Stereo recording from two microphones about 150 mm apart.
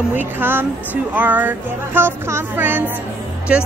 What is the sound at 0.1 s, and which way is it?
A woman's voice, 10° right (ahead or behind).